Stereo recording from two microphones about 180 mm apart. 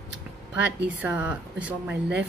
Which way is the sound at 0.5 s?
10° right (ahead or behind).